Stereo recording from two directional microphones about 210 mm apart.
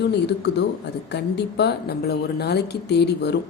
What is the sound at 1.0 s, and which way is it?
A woman's voice, 55° left (ahead or behind).